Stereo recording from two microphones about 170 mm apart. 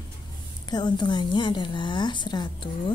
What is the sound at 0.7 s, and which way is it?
A woman's voice, 25° left (ahead or behind).